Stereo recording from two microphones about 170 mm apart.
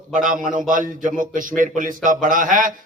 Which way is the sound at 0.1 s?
50° right (ahead or behind).